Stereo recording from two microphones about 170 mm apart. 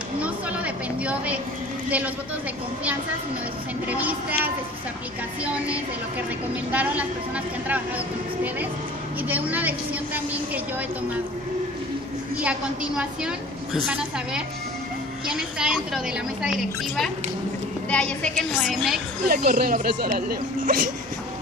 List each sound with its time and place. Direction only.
0.2 s a sound: 10° right (ahead or behind)
3.9 s a woman's voice: 10° right (ahead or behind)
5.4 s a woman's voice: 5° right (ahead or behind)
9.3 s a woman's voice: 10° right (ahead or behind)
12.4 s a woman's voice: 5° right (ahead or behind)
15.2 s a woman's voice: 5° right (ahead or behind)
19.2 s speech: 60° right (ahead or behind)